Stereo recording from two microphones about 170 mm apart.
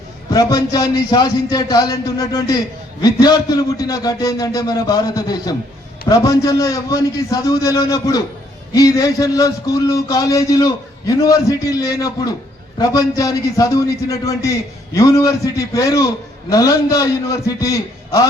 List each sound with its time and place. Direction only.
0.3 s a man's voice: 20° left (ahead or behind)